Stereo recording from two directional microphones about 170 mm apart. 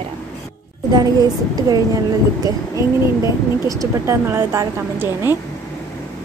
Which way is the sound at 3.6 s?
20° right (ahead or behind).